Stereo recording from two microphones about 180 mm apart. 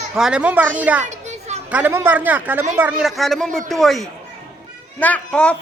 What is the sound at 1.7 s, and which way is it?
A woman's voice, 10° right (ahead or behind).